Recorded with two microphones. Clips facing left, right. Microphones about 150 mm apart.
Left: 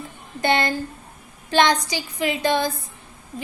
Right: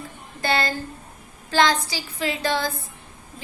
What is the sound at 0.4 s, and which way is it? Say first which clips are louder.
A woman's voice: left 3 dB; 20° left (ahead or behind).